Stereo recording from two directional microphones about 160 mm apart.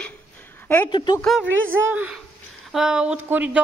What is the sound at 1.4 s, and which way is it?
Speech, 10° right (ahead or behind).